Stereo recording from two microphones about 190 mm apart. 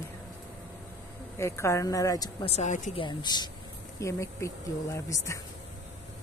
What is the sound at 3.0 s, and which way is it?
A woman's voice, 20° left (ahead or behind).